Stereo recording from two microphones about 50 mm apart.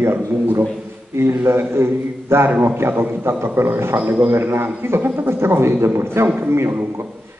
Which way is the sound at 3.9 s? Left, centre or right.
Right.